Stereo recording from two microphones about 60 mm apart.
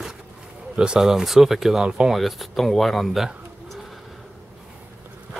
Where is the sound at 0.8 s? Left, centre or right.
Centre.